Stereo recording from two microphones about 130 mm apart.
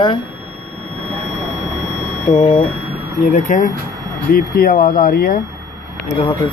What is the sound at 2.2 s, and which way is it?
Speech, 50° left (ahead or behind).